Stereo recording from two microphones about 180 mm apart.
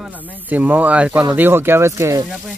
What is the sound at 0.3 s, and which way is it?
Speech, 10° right (ahead or behind).